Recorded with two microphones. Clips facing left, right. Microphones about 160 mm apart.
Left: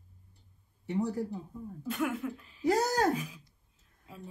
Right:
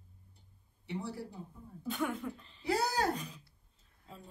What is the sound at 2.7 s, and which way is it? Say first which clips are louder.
Speech: left 5 dB; 45° left (ahead or behind).